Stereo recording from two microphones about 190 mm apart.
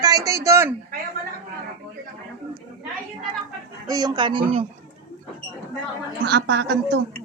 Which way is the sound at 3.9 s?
20° right (ahead or behind).